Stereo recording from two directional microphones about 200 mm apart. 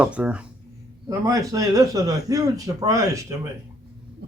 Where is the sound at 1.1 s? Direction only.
15° right (ahead or behind).